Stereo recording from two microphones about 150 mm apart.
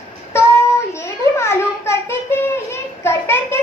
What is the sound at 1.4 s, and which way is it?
Child singing, 15° left (ahead or behind).